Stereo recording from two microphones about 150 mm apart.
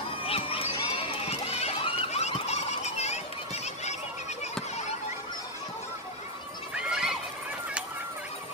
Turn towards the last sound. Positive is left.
turn(degrees=-5)  # may be behind; listen again after turning